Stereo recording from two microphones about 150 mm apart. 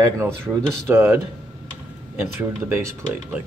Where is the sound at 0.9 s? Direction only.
15° right (ahead or behind).